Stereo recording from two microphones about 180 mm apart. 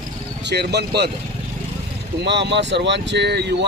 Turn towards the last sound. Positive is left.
turn(degrees=-70)  # may be behind; listen again after turning